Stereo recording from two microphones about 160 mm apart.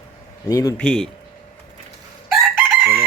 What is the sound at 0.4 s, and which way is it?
Speech, 20° left (ahead or behind).